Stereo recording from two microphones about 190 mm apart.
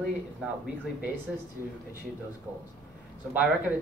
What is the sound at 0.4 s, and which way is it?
Speech, 5° right (ahead or behind).